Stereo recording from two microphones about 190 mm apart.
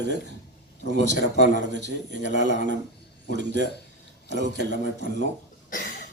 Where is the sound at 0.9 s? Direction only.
65° right (ahead or behind).